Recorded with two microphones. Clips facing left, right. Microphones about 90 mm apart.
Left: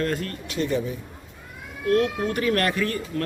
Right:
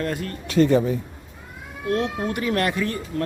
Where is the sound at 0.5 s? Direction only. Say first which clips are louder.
Right 8 dB; 45° right (ahead or behind).